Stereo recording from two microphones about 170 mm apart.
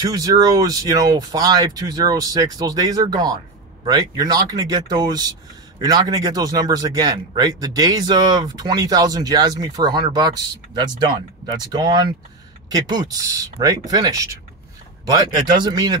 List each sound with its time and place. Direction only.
0.0 s a man's voice: 20° right (ahead or behind)